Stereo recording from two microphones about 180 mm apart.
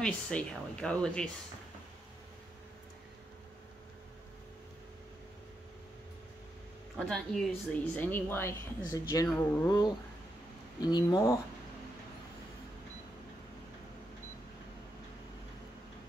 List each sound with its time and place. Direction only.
0.0 s speech: 5° left (ahead or behind)
7.0 s a woman's voice: 5° left (ahead or behind)